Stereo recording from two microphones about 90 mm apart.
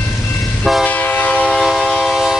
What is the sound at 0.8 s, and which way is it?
Train, 20° left (ahead or behind).